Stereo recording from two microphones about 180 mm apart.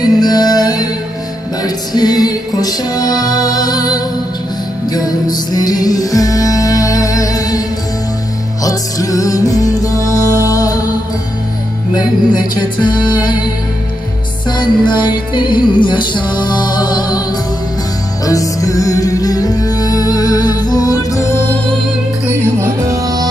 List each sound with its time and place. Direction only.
0.0 s music: 20° left (ahead or behind)
8.6 s music: 20° left (ahead or behind)
12.7 s music: 25° left (ahead or behind)
14.5 s music: 25° left (ahead or behind)
18.2 s music: 20° left (ahead or behind)
22.2 s music: 15° right (ahead or behind)